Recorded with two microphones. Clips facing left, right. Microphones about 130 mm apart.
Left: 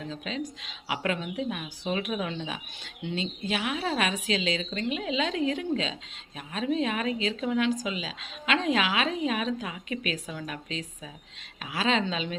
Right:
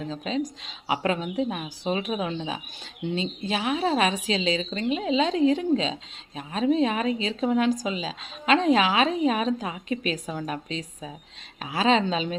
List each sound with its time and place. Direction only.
0.1 s speech: 35° right (ahead or behind)